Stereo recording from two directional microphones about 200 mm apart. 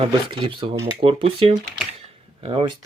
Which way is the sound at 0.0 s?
25° right (ahead or behind).